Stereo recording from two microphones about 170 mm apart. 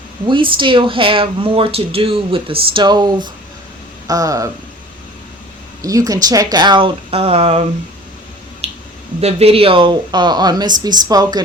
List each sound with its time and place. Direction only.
0.3 s speech: 30° right (ahead or behind)
4.0 s a sound: 20° right (ahead or behind)
5.8 s speech: 20° right (ahead or behind); by 7.6 s 35° right (ahead or behind)
8.6 s finger snapping: 35° right (ahead or behind)
9.2 s speech: 35° right (ahead or behind)